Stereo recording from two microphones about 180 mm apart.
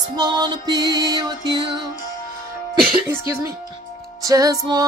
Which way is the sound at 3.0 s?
15° right (ahead or behind).